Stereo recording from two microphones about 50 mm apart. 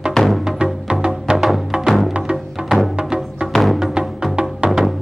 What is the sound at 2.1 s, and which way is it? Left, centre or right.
Music, centre.